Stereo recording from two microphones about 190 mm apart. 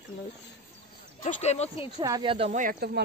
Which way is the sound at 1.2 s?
40° left (ahead or behind).